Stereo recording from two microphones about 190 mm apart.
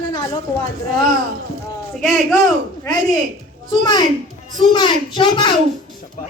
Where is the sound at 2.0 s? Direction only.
Centre (ahead or behind).